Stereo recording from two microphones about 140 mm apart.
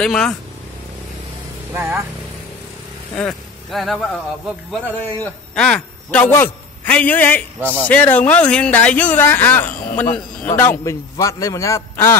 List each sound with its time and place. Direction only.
0.0 s speech: 5° left (ahead or behind)
1.7 s speech: 15° right (ahead or behind)
3.2 s speech: 5° left (ahead or behind)
4.9 s a man's voice: 15° left (ahead or behind)